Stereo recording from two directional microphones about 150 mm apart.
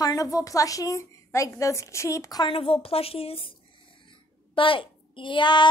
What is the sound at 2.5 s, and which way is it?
A woman's voice, 40° left (ahead or behind).